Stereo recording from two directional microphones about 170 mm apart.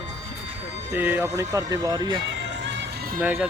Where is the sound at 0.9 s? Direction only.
10° right (ahead or behind).